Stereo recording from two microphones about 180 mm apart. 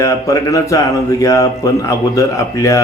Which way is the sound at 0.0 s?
15° left (ahead or behind).